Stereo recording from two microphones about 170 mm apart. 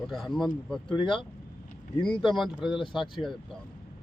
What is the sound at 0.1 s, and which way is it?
Speech, centre (ahead or behind).